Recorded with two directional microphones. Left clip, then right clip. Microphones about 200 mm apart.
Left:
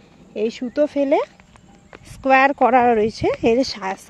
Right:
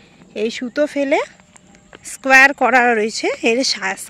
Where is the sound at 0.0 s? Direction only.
5° left (ahead or behind).